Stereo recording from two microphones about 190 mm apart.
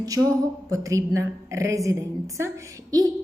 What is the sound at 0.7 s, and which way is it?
A woman's voice, 15° right (ahead or behind).